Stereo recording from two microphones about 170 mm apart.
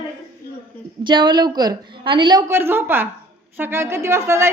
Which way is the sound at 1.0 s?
25° right (ahead or behind).